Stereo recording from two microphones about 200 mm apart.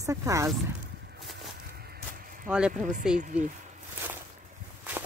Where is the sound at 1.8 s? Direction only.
50° right (ahead or behind).